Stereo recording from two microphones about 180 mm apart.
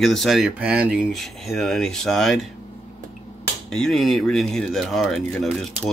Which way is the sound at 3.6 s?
Centre (ahead or behind).